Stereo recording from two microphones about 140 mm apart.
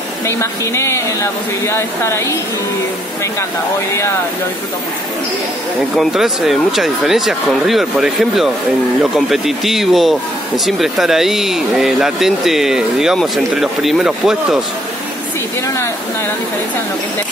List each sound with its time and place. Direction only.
0.3 s speech: 20° left (ahead or behind)
5.9 s a man's voice: centre (ahead or behind)
15.6 s speech: 20° left (ahead or behind)